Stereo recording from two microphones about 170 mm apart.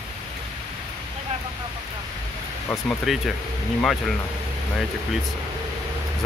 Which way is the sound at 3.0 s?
Centre (ahead or behind).